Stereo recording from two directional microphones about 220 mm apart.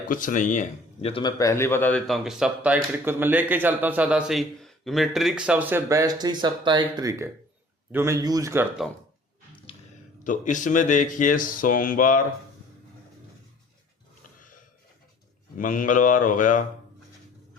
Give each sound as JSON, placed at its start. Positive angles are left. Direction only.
{"t": 0.1, "sound": "a man's voice", "side_deg": 35}
{"t": 8.8, "sound": "speech", "side_deg": 0}
{"t": 10.2, "sound": "speech", "side_deg": 35}
{"t": 15.5, "sound": "speech", "side_deg": 40}